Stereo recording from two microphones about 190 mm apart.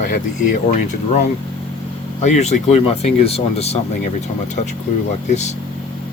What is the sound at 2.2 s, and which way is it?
Speech, 35° left (ahead or behind).